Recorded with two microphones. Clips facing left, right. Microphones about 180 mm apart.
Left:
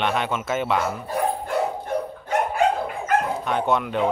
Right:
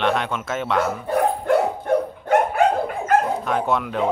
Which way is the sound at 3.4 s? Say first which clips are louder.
Right 1 dB; centre (ahead or behind).